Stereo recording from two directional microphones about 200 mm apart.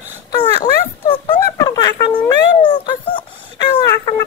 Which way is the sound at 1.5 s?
20° left (ahead or behind).